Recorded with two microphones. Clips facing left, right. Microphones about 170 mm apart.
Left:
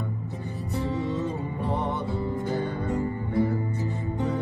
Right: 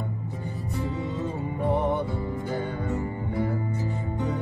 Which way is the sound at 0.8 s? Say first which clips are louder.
Left 4 dB; 35° left (ahead or behind).